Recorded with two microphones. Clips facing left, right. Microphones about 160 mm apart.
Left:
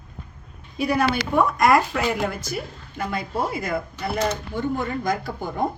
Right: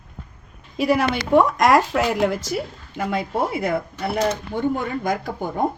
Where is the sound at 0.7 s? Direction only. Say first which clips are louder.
Right 2 dB; 90° right.